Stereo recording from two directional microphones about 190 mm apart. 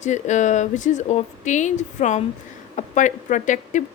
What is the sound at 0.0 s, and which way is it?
A woman's voice, 40° left (ahead or behind).